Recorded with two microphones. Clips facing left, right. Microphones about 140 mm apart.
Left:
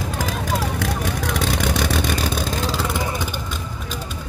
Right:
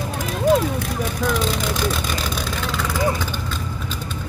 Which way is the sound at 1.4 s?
70° left (ahead or behind).